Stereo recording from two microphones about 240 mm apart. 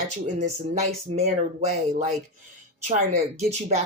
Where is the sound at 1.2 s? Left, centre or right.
Right.